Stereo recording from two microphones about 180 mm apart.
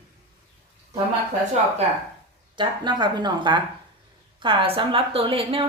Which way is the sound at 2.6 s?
25° right (ahead or behind).